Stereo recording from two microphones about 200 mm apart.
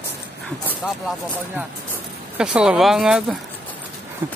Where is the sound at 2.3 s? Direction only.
5° right (ahead or behind).